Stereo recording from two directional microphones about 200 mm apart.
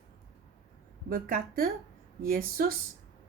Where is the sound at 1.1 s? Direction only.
50° right (ahead or behind).